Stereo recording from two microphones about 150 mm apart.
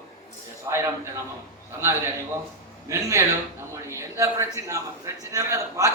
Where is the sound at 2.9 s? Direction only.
20° right (ahead or behind).